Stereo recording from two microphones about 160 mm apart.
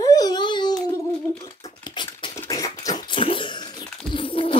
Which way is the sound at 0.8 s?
15° left (ahead or behind).